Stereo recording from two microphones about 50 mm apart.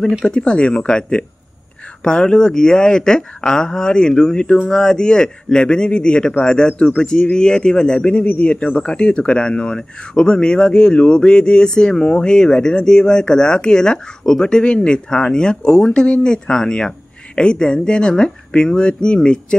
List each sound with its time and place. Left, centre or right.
0.2 s speech: centre